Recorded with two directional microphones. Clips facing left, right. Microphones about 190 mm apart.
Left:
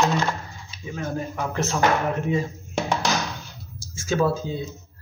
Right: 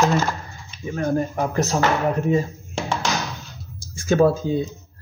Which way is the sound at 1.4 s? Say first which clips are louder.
Right 4 dB; 40° right (ahead or behind).